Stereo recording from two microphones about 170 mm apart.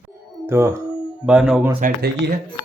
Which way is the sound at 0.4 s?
15° right (ahead or behind).